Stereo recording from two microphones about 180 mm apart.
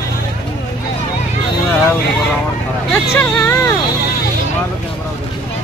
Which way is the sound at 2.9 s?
10° left (ahead or behind).